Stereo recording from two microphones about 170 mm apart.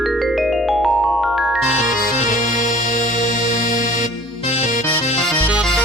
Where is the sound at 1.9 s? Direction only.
55° left (ahead or behind).